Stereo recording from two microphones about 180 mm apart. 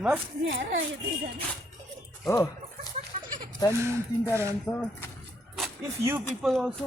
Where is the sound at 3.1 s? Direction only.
45° right (ahead or behind).